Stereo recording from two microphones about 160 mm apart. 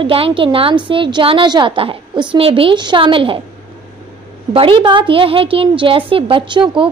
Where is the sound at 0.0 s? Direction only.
35° right (ahead or behind).